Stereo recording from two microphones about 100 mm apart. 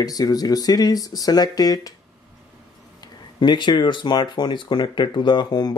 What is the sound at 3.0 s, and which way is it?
Speech, 50° left (ahead or behind).